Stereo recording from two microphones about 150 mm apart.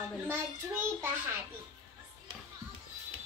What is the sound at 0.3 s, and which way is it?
A child's voice, 15° right (ahead or behind).